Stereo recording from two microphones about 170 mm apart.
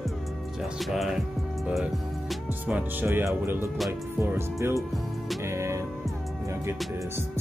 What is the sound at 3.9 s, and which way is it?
Music, 15° right (ahead or behind).